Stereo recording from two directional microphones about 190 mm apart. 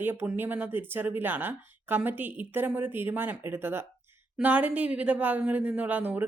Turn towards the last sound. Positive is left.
turn(degrees=-10)  # may be behind; listen again after turning